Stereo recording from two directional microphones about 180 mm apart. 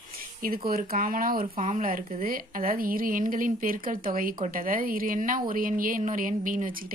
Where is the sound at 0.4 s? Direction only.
50° right (ahead or behind).